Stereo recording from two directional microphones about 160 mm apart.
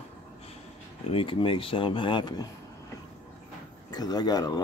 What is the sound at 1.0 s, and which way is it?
Speech, 35° left (ahead or behind).